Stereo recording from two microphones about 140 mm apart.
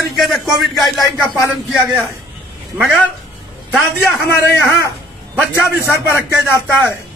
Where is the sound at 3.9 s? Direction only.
15° left (ahead or behind).